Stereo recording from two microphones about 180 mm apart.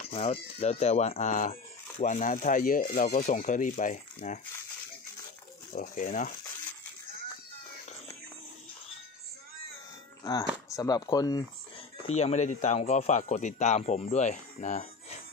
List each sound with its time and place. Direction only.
0.0 s speech: 35° left (ahead or behind)
5.8 s speech: 45° left (ahead or behind)
10.7 s speech: 20° left (ahead or behind)
12.1 s speech: 35° left (ahead or behind)